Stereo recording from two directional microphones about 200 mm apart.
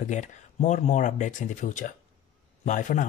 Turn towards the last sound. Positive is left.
turn(degrees=40)  # may be behind; listen again after turning